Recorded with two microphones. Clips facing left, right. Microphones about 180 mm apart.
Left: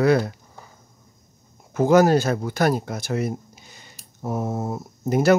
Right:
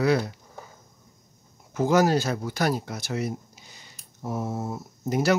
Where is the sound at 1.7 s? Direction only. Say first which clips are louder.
Left 5 dB; 55° left (ahead or behind).